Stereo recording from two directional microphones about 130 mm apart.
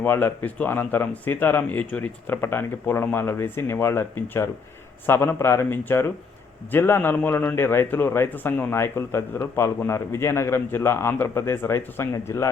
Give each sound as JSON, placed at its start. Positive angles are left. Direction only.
{"t": 0.0, "sound": "a man's voice", "side_deg": 15}